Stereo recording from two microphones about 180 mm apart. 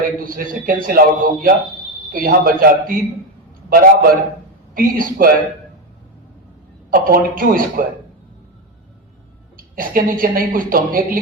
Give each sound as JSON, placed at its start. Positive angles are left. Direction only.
{"t": 0.3, "sound": "a woman's voice", "side_deg": -50}
{"t": 6.9, "sound": "a woman's voice", "side_deg": -50}
{"t": 9.6, "sound": "a woman's voice", "side_deg": -50}